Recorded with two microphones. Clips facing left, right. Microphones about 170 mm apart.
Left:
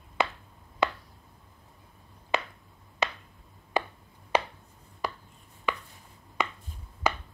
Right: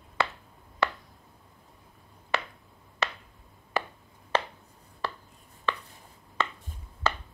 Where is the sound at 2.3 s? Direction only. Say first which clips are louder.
Left 1 dB; 15° left (ahead or behind).